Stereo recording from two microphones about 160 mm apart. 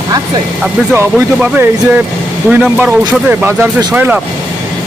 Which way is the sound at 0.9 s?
10° right (ahead or behind).